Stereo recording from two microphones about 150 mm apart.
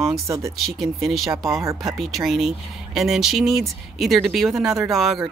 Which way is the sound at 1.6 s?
20° right (ahead or behind).